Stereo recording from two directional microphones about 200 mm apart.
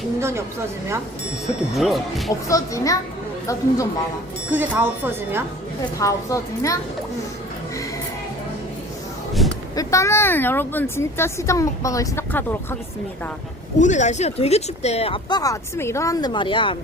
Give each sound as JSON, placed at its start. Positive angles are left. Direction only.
{"t": 0.2, "sound": "a woman's voice", "side_deg": -15}
{"t": 1.7, "sound": "speech", "side_deg": 0}
{"t": 2.5, "sound": "a woman's voice", "side_deg": 15}
{"t": 4.5, "sound": "speech", "side_deg": -10}
{"t": 6.0, "sound": "a woman's voice", "side_deg": 15}
{"t": 9.4, "sound": "a sound", "side_deg": 0}
{"t": 9.7, "sound": "a woman's voice", "side_deg": 15}
{"t": 13.7, "sound": "speech", "side_deg": 35}